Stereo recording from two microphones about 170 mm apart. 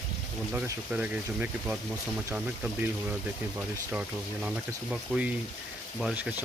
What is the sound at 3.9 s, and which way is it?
Speech, 5° right (ahead or behind).